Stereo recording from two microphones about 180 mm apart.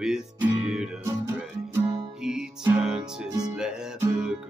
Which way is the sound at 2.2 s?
5° right (ahead or behind).